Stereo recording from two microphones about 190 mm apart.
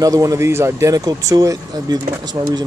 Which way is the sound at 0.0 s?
15° right (ahead or behind).